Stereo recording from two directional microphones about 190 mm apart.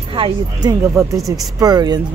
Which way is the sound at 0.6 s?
15° right (ahead or behind).